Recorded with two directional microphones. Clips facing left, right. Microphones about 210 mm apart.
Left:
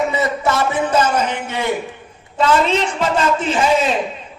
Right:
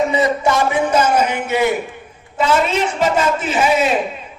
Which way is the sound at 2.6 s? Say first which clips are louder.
Right 1 dB; 10° right (ahead or behind).